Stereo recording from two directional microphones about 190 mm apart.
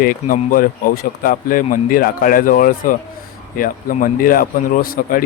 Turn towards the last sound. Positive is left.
turn(degrees=45)  # may be behind; listen again after turning